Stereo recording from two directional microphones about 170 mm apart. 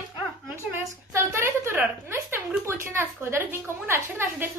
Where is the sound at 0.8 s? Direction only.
15° right (ahead or behind).